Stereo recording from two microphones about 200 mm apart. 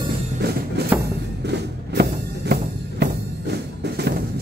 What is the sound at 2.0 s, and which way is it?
Music, 55° right (ahead or behind).